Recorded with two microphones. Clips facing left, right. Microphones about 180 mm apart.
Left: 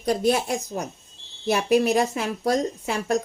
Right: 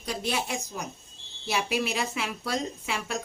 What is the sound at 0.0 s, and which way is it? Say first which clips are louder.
A woman's voice: left 9 dB; 45° left (ahead or behind).